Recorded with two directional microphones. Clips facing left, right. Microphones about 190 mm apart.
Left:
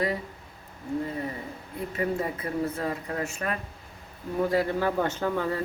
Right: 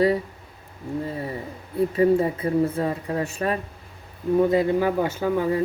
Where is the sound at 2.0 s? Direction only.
30° right (ahead or behind).